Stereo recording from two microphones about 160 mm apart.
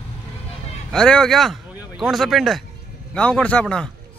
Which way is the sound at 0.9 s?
5° left (ahead or behind).